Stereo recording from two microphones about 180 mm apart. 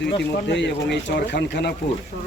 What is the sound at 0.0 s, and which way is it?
Speech, 75° left (ahead or behind).